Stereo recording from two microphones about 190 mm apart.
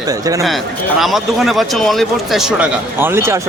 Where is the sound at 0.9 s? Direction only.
Centre (ahead or behind).